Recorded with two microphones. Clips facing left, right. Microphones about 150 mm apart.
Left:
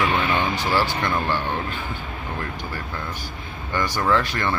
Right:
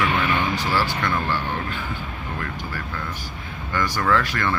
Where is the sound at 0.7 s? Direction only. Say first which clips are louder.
Left 3 dB; 25° left (ahead or behind).